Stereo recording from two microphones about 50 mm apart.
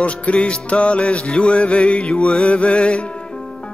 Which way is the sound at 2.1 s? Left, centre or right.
Centre.